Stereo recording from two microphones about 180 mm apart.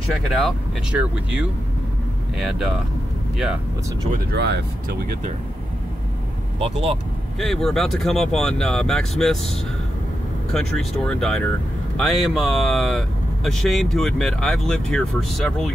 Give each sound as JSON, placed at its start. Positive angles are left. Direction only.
{"t": 0.3, "sound": "speech", "side_deg": 0}
{"t": 4.1, "sound": "speech", "side_deg": -65}
{"t": 6.6, "sound": "speech", "side_deg": -35}
{"t": 7.3, "sound": "speech", "side_deg": 0}
{"t": 10.5, "sound": "speech", "side_deg": 5}